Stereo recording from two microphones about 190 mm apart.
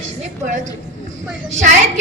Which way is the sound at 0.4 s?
40° right (ahead or behind).